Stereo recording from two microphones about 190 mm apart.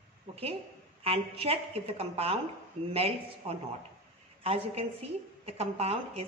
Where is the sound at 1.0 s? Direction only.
30° right (ahead or behind).